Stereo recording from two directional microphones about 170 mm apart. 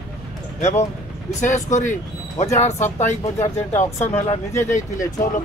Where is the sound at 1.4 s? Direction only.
45° left (ahead or behind).